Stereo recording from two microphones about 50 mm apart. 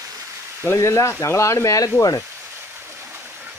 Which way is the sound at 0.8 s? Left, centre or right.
Left.